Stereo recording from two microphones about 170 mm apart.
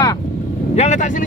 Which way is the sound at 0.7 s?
45° left (ahead or behind).